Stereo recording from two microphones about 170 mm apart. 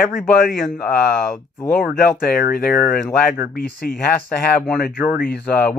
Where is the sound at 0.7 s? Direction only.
60° left (ahead or behind).